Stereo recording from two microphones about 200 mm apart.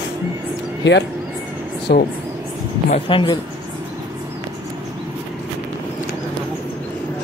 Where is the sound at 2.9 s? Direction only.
25° left (ahead or behind).